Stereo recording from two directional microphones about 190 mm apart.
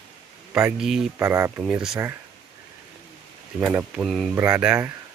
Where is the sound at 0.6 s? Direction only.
5° right (ahead or behind).